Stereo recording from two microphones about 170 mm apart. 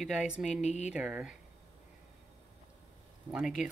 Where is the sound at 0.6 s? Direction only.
45° left (ahead or behind).